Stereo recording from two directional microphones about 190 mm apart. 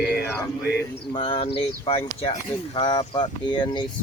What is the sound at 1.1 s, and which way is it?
Speech, 30° left (ahead or behind).